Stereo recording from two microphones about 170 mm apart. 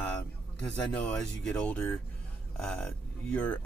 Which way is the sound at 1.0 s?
5° left (ahead or behind).